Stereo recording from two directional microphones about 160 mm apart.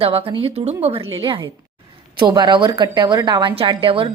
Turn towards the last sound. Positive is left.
turn(degrees=-35)  # may be behind; listen again after turning